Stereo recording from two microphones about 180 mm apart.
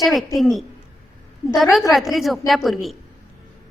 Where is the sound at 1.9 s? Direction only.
Centre (ahead or behind).